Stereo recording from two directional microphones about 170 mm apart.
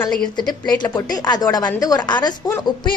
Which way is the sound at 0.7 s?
25° left (ahead or behind).